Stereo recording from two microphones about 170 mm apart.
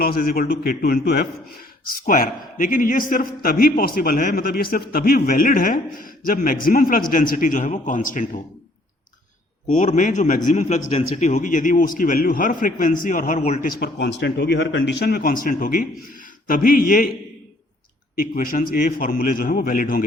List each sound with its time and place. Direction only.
0.0 s a man's voice: 60° left (ahead or behind)
9.7 s a man's voice: 50° left (ahead or behind)
18.2 s a man's voice: 55° left (ahead or behind)